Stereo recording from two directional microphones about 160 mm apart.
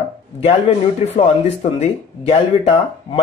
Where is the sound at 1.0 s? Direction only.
40° left (ahead or behind).